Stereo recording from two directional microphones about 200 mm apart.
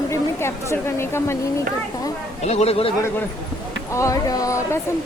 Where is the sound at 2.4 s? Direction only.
30° left (ahead or behind).